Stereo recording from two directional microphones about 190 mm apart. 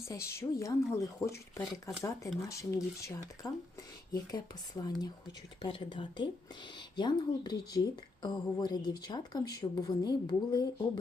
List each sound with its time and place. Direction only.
0.0 s speech: 15° left (ahead or behind)